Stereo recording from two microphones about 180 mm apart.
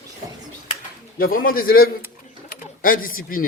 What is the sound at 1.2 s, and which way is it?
Speech, 55° left (ahead or behind).